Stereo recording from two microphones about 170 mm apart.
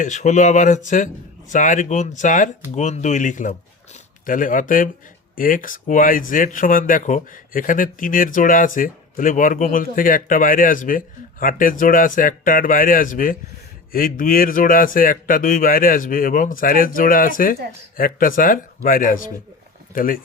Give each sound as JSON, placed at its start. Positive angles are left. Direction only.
{"t": 0.0, "sound": "speech", "side_deg": 45}